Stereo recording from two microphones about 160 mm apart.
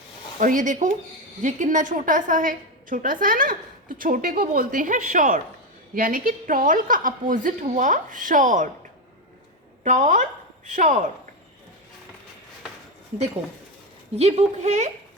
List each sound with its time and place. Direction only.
0.3 s a woman's voice: 55° right (ahead or behind)
9.8 s speech: 50° right (ahead or behind)
14.2 s speech: 40° right (ahead or behind)